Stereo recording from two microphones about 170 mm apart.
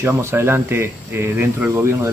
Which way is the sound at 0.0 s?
15° right (ahead or behind).